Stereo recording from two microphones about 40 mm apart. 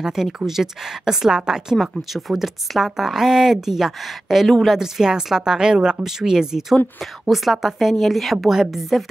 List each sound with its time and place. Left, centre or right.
0.0 s a woman's voice: centre
2.0 s a woman's voice: centre